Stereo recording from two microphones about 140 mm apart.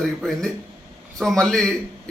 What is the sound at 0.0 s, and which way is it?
Speech, 5° left (ahead or behind).